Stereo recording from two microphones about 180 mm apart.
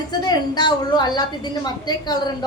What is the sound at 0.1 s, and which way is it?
A woman's voice, 25° left (ahead or behind).